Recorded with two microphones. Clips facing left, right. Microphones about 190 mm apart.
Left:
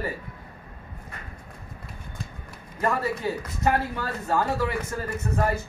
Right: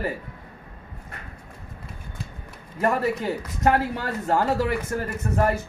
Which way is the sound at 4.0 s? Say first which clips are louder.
Right 2 dB; 60° right (ahead or behind).